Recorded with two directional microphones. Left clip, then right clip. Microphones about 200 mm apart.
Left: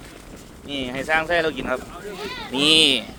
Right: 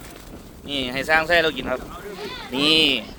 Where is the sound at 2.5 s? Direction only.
Centre (ahead or behind).